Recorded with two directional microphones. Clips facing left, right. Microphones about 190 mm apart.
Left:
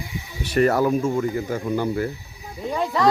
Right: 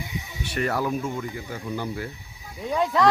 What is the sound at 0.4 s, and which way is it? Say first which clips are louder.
Speech: left 8 dB; 40° left (ahead or behind).